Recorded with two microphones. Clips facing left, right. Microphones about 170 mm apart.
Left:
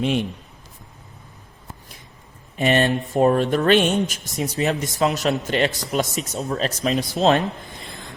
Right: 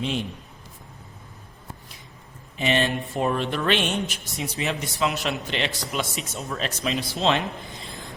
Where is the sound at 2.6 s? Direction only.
50° left (ahead or behind).